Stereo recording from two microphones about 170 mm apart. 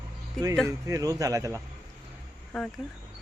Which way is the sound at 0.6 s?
20° right (ahead or behind).